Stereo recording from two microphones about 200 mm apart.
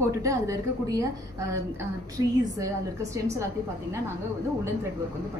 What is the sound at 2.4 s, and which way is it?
A woman's voice, 15° right (ahead or behind).